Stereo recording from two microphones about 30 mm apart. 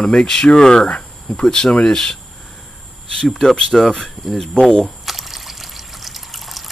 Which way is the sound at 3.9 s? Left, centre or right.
Centre.